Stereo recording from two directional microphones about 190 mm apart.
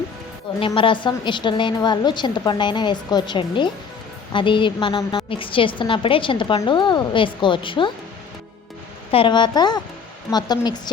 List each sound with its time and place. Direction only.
0.6 s a woman's voice: 25° left (ahead or behind)
9.1 s a woman's voice: 25° left (ahead or behind)